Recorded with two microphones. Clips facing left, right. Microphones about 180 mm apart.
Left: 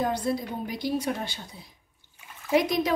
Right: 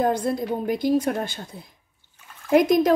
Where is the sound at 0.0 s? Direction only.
50° right (ahead or behind).